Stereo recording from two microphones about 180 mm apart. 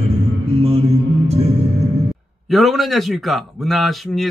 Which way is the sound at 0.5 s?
35° right (ahead or behind).